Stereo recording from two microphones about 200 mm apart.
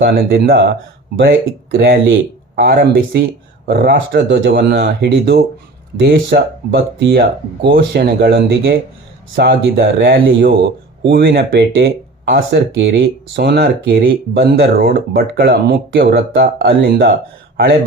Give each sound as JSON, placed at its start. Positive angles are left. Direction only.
{"t": 0.0, "sound": "speech", "side_deg": -55}
{"t": 2.6, "sound": "speech", "side_deg": -55}